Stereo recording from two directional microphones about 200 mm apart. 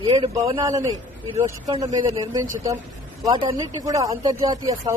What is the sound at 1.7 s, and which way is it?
Speech, 25° right (ahead or behind).